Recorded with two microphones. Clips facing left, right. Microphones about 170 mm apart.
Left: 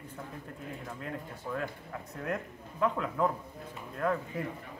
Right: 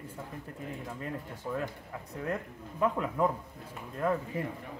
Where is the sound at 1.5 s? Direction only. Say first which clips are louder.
Right 2 dB; 15° right (ahead or behind).